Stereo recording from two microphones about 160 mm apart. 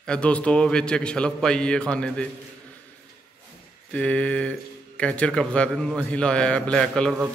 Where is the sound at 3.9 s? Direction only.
10° left (ahead or behind).